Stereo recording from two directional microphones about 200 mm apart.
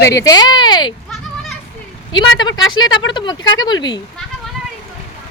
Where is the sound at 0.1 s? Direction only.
15° left (ahead or behind).